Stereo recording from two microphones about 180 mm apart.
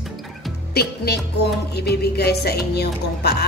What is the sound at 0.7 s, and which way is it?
Music, 65° left (ahead or behind).